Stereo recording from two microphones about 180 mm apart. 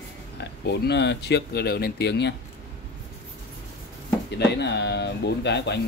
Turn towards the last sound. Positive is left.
turn(degrees=70)  # may be behind; listen again after turning